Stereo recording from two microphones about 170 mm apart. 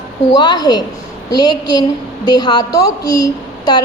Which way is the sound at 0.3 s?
25° left (ahead or behind).